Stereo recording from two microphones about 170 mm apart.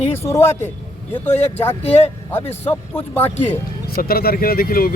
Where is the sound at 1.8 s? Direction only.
35° left (ahead or behind).